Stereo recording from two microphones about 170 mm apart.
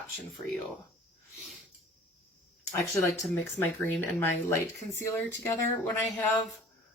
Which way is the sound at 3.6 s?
10° left (ahead or behind).